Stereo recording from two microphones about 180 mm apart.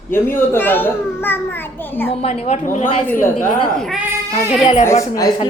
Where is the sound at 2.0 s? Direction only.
35° left (ahead or behind).